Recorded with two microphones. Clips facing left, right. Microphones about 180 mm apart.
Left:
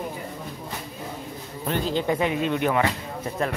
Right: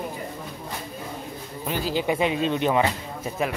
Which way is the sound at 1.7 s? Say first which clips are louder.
Left 1 dB; 5° right (ahead or behind).